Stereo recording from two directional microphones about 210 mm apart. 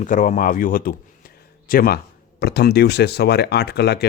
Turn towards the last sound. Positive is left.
turn(degrees=50)  # may be behind; listen again after turning